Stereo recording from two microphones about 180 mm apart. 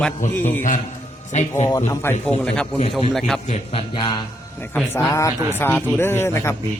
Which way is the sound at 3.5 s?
30° left (ahead or behind).